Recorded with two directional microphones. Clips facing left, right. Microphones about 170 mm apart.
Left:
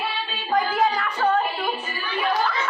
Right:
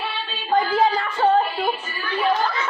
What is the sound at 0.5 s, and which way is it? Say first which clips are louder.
Child singing: right 3 dB; 25° right (ahead or behind).